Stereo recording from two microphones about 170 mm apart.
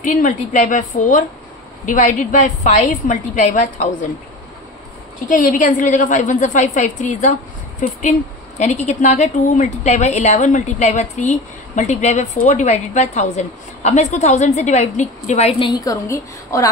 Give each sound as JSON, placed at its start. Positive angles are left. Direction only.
{"t": 0.0, "sound": "a woman's voice", "side_deg": 50}
{"t": 5.3, "sound": "a woman's voice", "side_deg": 50}
{"t": 15.6, "sound": "a woman's voice", "side_deg": 20}